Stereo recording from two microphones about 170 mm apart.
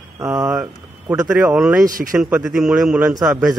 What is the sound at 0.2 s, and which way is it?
Speech, 10° right (ahead or behind).